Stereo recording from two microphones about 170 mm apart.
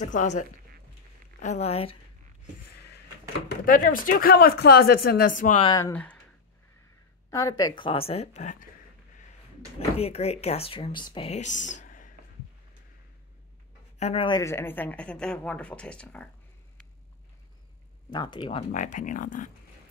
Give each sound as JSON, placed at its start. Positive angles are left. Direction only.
{"t": 0.0, "sound": "speech", "side_deg": 45}
{"t": 3.6, "sound": "speech", "side_deg": 55}
{"t": 5.6, "sound": "speech", "side_deg": 20}
{"t": 7.2, "sound": "speech", "side_deg": 20}
{"t": 9.8, "sound": "speech", "side_deg": 35}
{"t": 11.2, "sound": "speech", "side_deg": 45}
{"t": 13.9, "sound": "speech", "side_deg": 35}
{"t": 14.4, "sound": "speech", "side_deg": 15}
{"t": 18.1, "sound": "speech", "side_deg": 25}
{"t": 18.7, "sound": "speech", "side_deg": 50}